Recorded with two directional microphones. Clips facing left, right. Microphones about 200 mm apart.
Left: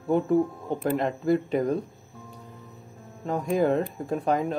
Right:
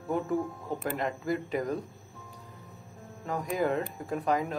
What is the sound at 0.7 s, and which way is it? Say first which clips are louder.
Speech: left 6 dB; 25° left (ahead or behind).